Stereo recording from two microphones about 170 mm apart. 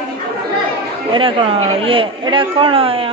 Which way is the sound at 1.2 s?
30° right (ahead or behind).